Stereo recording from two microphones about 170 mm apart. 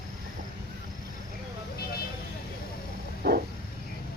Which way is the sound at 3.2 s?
75° right (ahead or behind).